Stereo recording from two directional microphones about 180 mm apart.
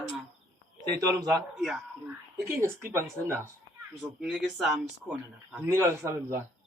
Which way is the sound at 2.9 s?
15° right (ahead or behind).